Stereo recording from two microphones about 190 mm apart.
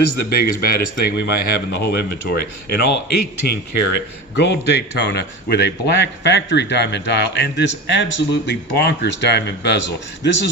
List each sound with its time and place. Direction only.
0.2 s a man's voice: 55° left (ahead or behind)